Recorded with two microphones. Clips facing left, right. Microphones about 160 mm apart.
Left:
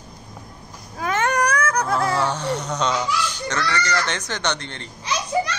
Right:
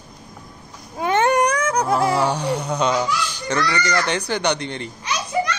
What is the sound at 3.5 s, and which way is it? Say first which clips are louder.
Speech: right 4 dB; 15° right (ahead or behind).